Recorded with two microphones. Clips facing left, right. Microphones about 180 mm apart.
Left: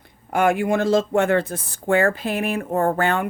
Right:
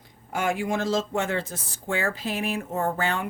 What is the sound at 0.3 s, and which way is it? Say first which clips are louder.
Speech: left 7 dB; 60° left (ahead or behind).